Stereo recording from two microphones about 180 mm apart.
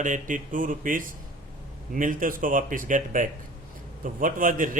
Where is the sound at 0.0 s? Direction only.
45° right (ahead or behind).